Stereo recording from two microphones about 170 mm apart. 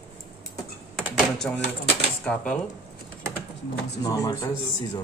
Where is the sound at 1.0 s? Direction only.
5° left (ahead or behind).